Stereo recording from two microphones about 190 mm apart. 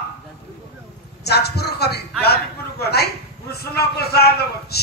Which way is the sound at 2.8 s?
55° left (ahead or behind).